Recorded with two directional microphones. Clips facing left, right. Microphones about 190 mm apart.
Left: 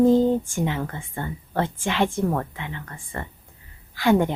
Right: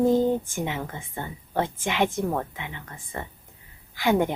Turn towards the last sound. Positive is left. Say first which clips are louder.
# left 3 dB
turn(degrees=-15)  # may be behind; listen again after turning